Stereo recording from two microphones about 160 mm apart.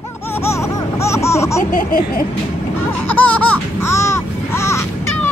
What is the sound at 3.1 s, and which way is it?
Speech, 10° left (ahead or behind).